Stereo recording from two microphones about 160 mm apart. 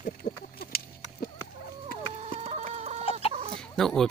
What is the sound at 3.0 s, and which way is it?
Chicken, 35° left (ahead or behind).